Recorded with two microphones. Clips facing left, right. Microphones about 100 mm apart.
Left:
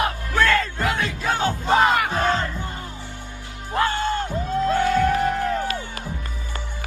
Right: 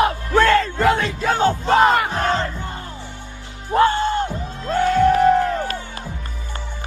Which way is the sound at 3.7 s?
30° right (ahead or behind).